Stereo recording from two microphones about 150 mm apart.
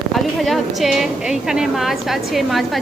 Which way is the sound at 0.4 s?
Centre (ahead or behind).